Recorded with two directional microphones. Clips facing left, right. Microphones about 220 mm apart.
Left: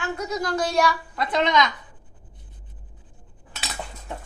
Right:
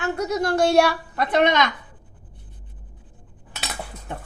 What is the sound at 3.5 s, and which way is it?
Cutlery, 60° right (ahead or behind).